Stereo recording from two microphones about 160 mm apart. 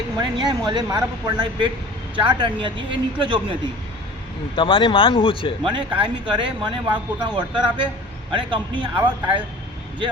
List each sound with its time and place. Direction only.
0.2 s speech: 30° right (ahead or behind)
4.5 s speech: 35° left (ahead or behind)
5.6 s speech: 30° right (ahead or behind)
9.0 s speech: 10° right (ahead or behind)